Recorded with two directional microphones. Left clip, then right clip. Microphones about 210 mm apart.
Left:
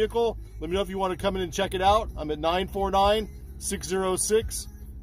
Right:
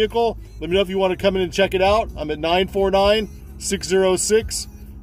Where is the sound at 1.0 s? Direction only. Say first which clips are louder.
Right 8 dB; 40° left (ahead or behind).